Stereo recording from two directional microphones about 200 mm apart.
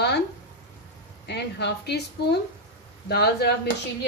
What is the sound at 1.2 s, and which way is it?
A woman's voice, 55° left (ahead or behind).